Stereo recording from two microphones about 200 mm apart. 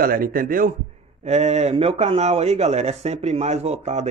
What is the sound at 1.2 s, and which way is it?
Speech, 35° right (ahead or behind).